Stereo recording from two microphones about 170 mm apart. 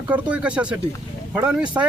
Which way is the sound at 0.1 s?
5° right (ahead or behind).